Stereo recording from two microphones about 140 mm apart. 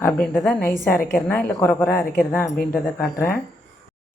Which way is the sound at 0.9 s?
90° left.